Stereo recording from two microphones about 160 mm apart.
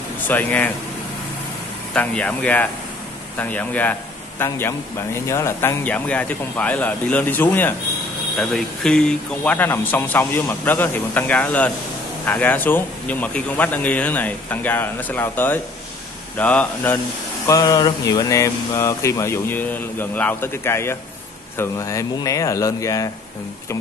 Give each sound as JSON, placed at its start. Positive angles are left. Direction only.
{"t": 0.3, "sound": "speech", "side_deg": 10}
{"t": 2.0, "sound": "speech", "side_deg": 10}
{"t": 17.5, "sound": "speech", "side_deg": 20}